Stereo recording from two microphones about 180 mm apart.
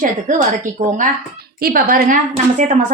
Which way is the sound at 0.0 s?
45° right (ahead or behind).